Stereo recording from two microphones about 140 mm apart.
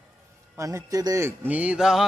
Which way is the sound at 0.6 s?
25° right (ahead or behind).